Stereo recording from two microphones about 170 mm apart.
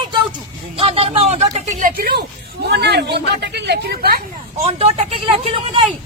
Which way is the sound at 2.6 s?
75° right (ahead or behind).